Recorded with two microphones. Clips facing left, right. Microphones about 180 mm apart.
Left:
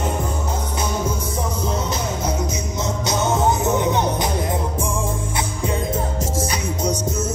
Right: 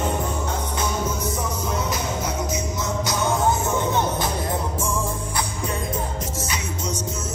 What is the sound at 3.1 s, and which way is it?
Music, 20° left (ahead or behind).